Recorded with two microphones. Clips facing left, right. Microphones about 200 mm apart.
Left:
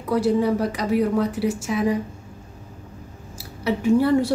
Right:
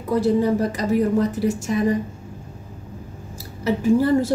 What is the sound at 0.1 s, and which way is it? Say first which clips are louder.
A woman's voice: right 1 dB; centre (ahead or behind).